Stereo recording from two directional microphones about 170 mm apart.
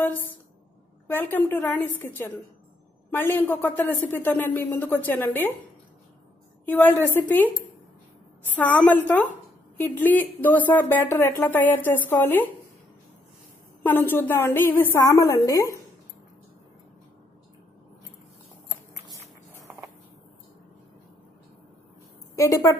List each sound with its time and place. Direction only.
0.0 s speech: 10° left (ahead or behind)
6.6 s speech: 10° left (ahead or behind)
8.5 s speech: 10° left (ahead or behind)
13.8 s speech: 10° left (ahead or behind)
19.5 s a sound: 10° right (ahead or behind)
22.3 s a woman's voice: 20° left (ahead or behind)